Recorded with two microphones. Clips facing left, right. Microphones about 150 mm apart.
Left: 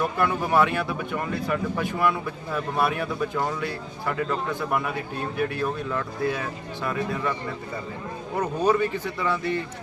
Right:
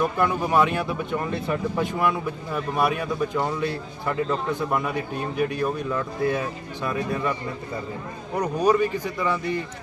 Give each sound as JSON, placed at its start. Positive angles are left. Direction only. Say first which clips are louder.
{"t": 0.2, "sound": "speech", "louder": "left 1 dB", "side_deg": -20}
{"t": 8.4, "sound": "speech", "louder": "right 2 dB", "side_deg": -15}